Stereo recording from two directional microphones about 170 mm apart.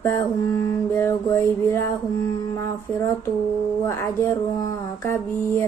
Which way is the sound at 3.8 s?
15° left (ahead or behind).